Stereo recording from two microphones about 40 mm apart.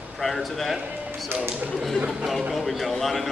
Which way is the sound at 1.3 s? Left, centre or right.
Right.